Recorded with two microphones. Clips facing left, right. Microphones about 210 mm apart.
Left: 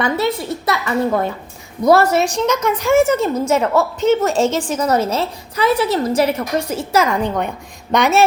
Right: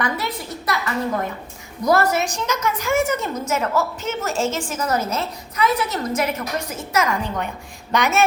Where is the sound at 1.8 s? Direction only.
30° left (ahead or behind).